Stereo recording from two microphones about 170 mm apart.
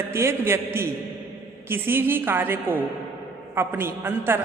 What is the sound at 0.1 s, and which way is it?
Speech, 15° right (ahead or behind).